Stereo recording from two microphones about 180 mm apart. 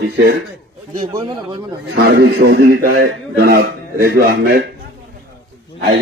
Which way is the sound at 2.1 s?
65° right (ahead or behind).